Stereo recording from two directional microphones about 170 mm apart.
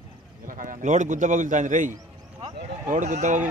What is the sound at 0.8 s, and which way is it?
A man's voice, 45° right (ahead or behind).